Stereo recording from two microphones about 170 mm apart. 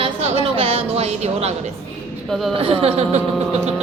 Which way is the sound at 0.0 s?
35° right (ahead or behind).